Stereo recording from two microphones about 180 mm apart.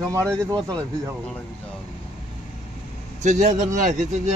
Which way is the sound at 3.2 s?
40° right (ahead or behind).